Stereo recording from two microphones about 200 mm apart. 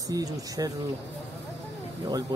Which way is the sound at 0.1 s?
15° right (ahead or behind).